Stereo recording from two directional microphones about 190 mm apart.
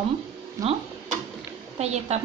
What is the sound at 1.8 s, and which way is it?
Speech, 35° right (ahead or behind).